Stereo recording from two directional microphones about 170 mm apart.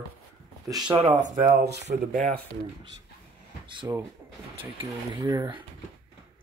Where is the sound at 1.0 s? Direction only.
40° right (ahead or behind).